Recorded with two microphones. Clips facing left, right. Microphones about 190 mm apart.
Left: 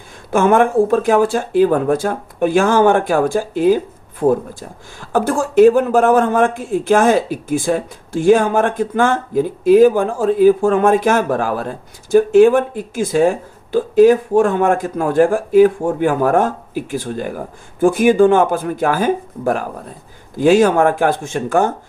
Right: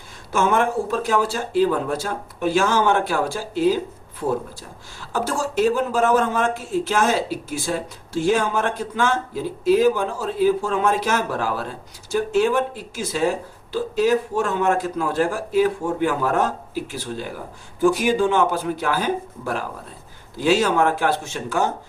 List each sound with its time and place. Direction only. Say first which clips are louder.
0.3 s speech: left 7 dB; 55° left (ahead or behind)